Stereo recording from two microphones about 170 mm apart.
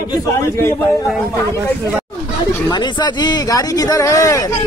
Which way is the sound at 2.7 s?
25° left (ahead or behind).